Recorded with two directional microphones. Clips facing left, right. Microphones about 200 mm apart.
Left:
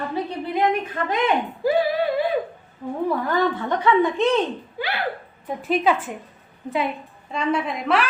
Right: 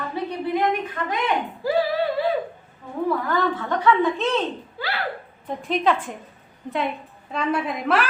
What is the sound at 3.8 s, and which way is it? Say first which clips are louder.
A woman's voice: left 2 dB; 15° left (ahead or behind).